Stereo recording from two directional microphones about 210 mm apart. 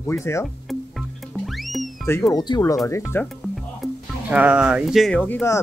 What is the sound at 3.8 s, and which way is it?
Speech, 5° right (ahead or behind).